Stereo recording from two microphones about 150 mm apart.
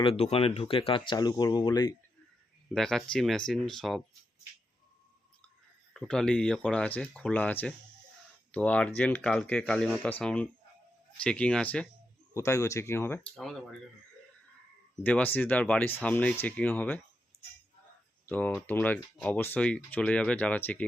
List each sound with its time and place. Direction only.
0.0 s speech: 40° left (ahead or behind)
2.7 s speech: 5° left (ahead or behind)
5.9 s speech: 5° left (ahead or behind)
12.3 s speech: 20° left (ahead or behind)
13.3 s speech: 5° left (ahead or behind)
15.0 s speech: 10° left (ahead or behind)
18.3 s speech: 10° left (ahead or behind)